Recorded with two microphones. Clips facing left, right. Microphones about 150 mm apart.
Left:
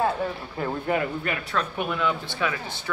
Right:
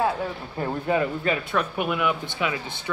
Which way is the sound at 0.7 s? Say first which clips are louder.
Right 2 dB; 20° right (ahead or behind).